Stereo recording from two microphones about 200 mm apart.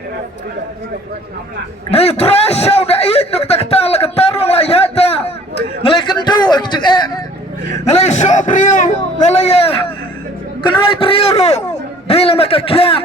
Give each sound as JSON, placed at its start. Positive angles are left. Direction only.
{"t": 1.9, "sound": "a man's voice", "side_deg": 30}
{"t": 5.8, "sound": "a sound", "side_deg": 25}
{"t": 7.9, "sound": "a man's voice", "side_deg": 35}